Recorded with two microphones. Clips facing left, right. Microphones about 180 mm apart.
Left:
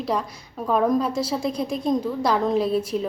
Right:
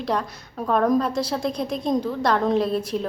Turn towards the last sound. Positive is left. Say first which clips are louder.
# left 1 dB
turn(degrees=5)  # may be behind; listen again after turning